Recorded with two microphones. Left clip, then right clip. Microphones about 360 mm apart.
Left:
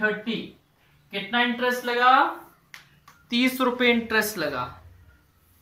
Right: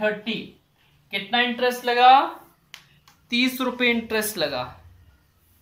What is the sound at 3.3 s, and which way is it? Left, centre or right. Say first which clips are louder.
Speech: even; centre.